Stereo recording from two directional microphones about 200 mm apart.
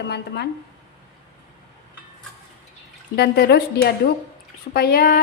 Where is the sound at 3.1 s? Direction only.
55° left (ahead or behind).